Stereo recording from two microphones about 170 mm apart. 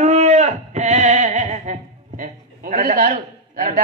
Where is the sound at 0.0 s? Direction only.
40° right (ahead or behind).